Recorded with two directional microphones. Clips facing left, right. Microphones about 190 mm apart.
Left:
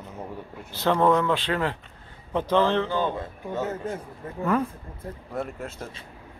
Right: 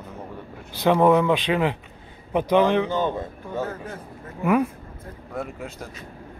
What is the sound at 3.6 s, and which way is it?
Speech, 20° left (ahead or behind).